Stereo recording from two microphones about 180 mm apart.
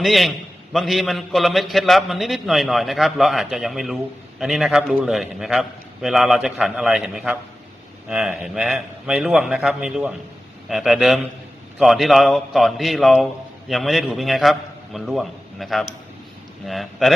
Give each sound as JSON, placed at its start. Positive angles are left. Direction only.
{"t": 0.0, "sound": "a man's voice", "side_deg": 0}